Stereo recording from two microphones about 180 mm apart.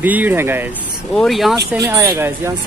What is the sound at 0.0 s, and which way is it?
Speech, 10° right (ahead or behind).